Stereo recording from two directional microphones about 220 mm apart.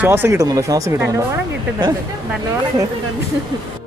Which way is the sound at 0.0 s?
10° right (ahead or behind).